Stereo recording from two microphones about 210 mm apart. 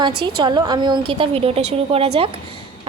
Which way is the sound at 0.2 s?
20° right (ahead or behind).